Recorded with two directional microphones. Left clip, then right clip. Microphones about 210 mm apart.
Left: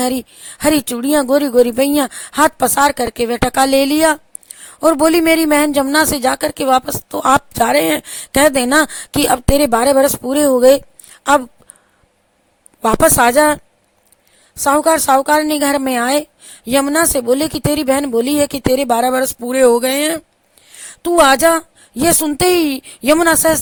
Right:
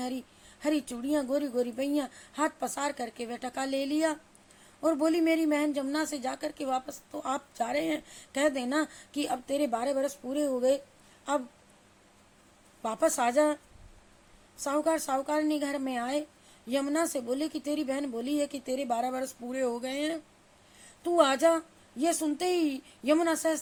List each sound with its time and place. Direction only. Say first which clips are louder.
0.0 s a man's voice: left 18 dB; 50° left (ahead or behind)
12.8 s a man's voice: left 16 dB; 50° left (ahead or behind)
14.6 s a man's voice: left 16 dB; 50° left (ahead or behind)